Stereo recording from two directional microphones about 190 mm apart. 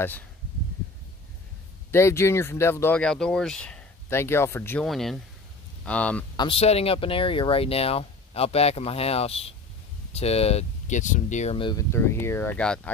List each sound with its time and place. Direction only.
1.9 s speech: 15° left (ahead or behind)
4.8 s speech: centre (ahead or behind)
6.3 s speech: 25° left (ahead or behind)
11.9 s speech: 15° left (ahead or behind)